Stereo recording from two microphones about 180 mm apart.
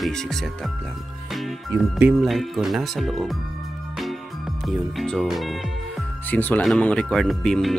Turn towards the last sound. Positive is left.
turn(degrees=0)  # may be behind; listen again after turning